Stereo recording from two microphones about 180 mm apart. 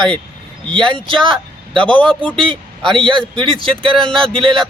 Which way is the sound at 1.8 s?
5° left (ahead or behind).